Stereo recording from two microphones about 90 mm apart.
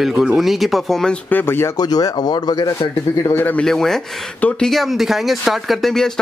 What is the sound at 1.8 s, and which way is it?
Speech, 45° left (ahead or behind).